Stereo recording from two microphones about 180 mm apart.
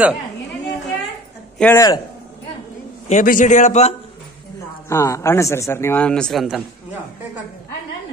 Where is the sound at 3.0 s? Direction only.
45° left (ahead or behind).